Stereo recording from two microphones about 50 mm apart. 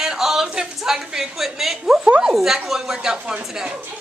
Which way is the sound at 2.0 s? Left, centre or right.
Right.